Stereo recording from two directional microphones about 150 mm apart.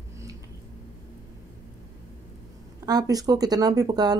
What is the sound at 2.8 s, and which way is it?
Speech, 25° right (ahead or behind).